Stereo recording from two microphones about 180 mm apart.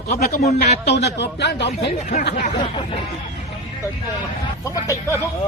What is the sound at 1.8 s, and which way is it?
Speech, 40° left (ahead or behind).